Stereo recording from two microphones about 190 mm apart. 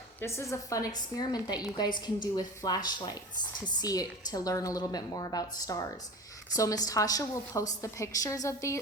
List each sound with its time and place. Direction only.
0.2 s a woman's voice: 15° left (ahead or behind)